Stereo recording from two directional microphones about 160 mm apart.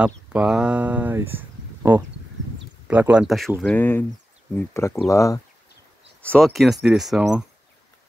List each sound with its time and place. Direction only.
0.0 s speech: 5° right (ahead or behind); by 5.4 s 20° left (ahead or behind)
6.2 s speech: 5° left (ahead or behind)